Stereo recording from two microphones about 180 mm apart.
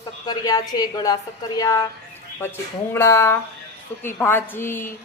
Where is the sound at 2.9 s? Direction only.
15° left (ahead or behind).